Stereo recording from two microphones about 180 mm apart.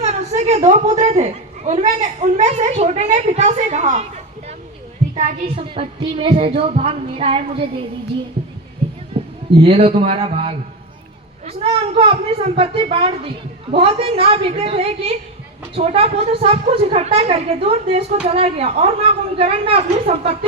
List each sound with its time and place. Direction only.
0.0 s a woman's voice: 40° right (ahead or behind)
5.5 s music: 30° right (ahead or behind)
9.2 s a sound: 35° right (ahead or behind)
9.6 s a woman's voice: 30° right (ahead or behind)